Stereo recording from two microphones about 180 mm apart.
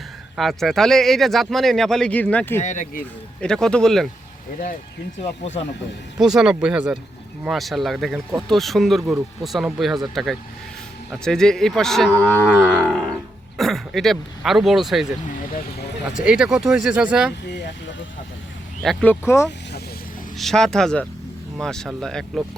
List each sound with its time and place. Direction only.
0.3 s speech: centre (ahead or behind)
2.6 s speech: 40° left (ahead or behind)
3.4 s speech: 5° left (ahead or behind)
6.1 s speech: 5° right (ahead or behind)
11.1 s speech: 5° left (ahead or behind)
12.3 s livestock: 10° left (ahead or behind)
13.6 s speech: centre (ahead or behind)
16.2 s speech: 5° right (ahead or behind)
18.8 s speech: 5° left (ahead or behind)